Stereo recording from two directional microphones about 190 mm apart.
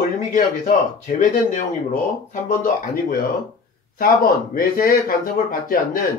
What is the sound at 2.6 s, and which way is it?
Speech, 45° left (ahead or behind).